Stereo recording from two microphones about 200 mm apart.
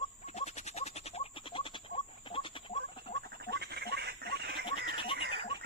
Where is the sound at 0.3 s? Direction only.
35° left (ahead or behind).